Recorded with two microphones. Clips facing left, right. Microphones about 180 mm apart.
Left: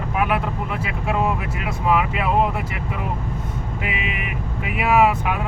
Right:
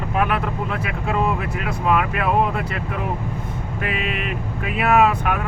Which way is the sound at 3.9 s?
60° right (ahead or behind).